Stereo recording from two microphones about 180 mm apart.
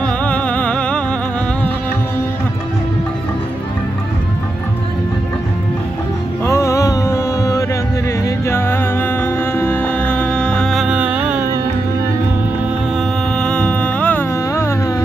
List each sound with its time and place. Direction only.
0.0 s music: 5° left (ahead or behind)
6.4 s music: 15° left (ahead or behind); by 11.4 s 5° right (ahead or behind)
13.4 s music: 5° left (ahead or behind)